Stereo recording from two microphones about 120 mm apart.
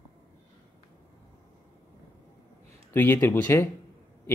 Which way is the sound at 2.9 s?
15° left (ahead or behind).